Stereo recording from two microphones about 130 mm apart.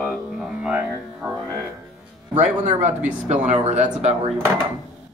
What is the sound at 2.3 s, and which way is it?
Speech, 60° right (ahead or behind).